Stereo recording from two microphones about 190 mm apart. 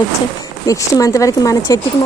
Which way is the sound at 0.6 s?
20° left (ahead or behind).